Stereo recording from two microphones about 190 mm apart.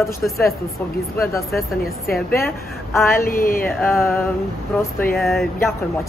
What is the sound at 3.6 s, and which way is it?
Speech, 10° left (ahead or behind).